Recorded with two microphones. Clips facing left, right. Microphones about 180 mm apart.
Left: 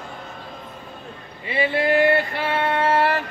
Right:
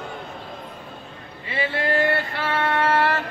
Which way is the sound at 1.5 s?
15° left (ahead or behind).